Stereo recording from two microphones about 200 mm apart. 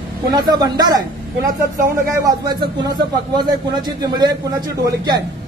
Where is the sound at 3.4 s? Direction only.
20° right (ahead or behind).